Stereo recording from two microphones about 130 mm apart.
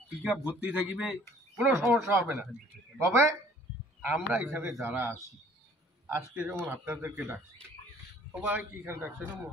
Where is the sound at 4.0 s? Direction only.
15° right (ahead or behind).